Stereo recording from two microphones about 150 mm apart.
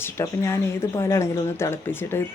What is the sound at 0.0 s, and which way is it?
Speech, 15° left (ahead or behind).